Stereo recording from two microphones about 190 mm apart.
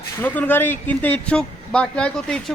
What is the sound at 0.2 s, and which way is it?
Speech, 10° left (ahead or behind).